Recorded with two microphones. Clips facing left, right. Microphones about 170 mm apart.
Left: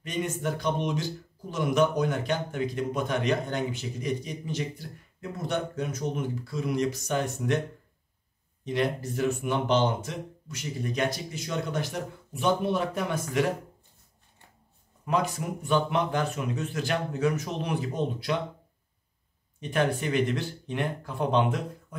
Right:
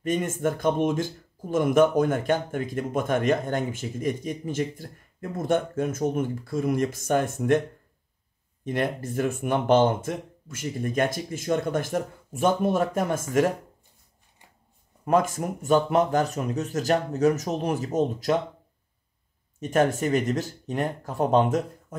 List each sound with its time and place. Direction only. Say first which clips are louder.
0.0 s speech: right 5 dB; 50° right (ahead or behind)
8.6 s speech: right 1 dB; 50° right (ahead or behind)
15.0 s speech: right 5 dB; 45° right (ahead or behind)
19.6 s speech: right 4 dB; 45° right (ahead or behind)